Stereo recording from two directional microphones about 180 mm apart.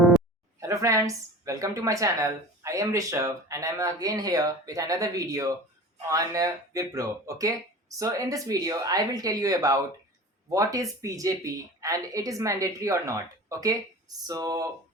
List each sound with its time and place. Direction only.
0.6 s speech: 15° right (ahead or behind)